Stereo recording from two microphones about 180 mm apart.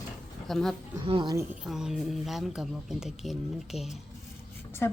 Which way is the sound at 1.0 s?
25° right (ahead or behind).